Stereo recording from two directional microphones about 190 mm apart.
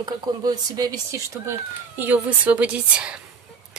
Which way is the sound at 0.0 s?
20° right (ahead or behind).